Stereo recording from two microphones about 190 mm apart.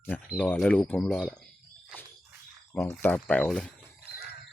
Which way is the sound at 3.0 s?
10° left (ahead or behind).